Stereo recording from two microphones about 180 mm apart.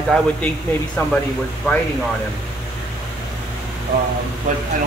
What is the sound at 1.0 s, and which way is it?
Speech, 10° left (ahead or behind).